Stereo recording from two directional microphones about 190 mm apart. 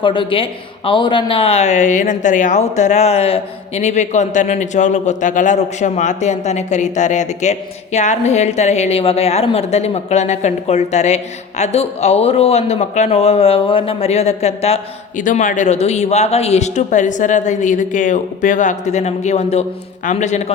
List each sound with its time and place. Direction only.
0.0 s a woman's voice: 25° left (ahead or behind)